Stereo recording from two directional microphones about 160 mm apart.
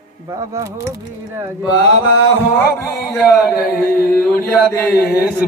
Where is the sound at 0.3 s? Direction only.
20° right (ahead or behind).